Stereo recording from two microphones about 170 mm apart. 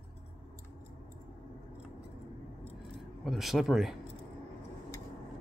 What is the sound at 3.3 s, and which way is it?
Speech, centre (ahead or behind).